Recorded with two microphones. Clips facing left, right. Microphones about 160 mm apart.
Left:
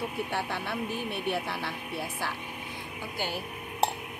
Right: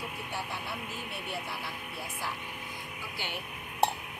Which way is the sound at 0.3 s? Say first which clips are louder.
Left 5 dB; 70° left (ahead or behind).